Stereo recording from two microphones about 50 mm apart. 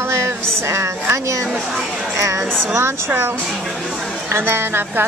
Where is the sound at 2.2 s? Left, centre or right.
Right.